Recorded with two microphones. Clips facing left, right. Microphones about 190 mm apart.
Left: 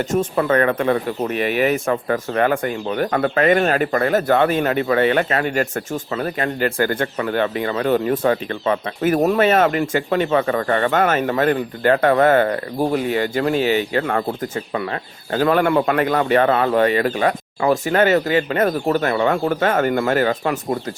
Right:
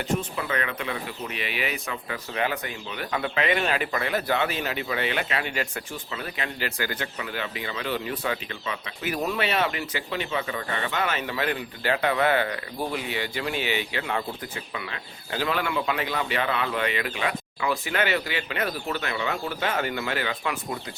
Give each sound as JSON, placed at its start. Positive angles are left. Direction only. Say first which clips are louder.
{"t": 0.1, "sound": "speech", "louder": "left 11 dB", "side_deg": 50}